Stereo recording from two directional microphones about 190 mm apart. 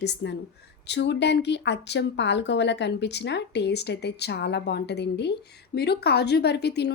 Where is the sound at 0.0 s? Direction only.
65° left (ahead or behind).